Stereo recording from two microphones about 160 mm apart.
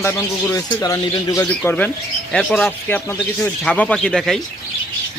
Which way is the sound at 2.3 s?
5° left (ahead or behind).